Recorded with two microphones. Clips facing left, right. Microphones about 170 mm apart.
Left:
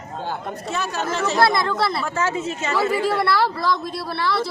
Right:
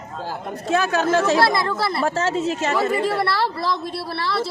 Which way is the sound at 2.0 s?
35° right (ahead or behind).